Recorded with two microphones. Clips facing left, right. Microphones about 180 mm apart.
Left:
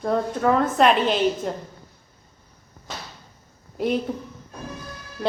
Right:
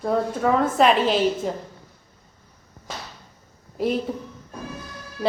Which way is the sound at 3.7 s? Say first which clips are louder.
Even; centre (ahead or behind).